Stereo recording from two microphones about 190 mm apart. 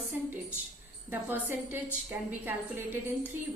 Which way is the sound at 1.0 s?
10° right (ahead or behind).